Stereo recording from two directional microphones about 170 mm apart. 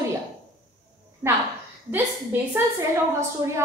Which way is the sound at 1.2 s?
15° right (ahead or behind).